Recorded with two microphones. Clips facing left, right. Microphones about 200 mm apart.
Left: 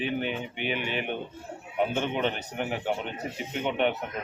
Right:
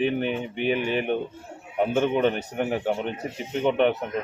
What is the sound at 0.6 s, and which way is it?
Speech, 45° right (ahead or behind).